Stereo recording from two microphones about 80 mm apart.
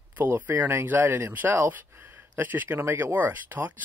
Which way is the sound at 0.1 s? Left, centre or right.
Right.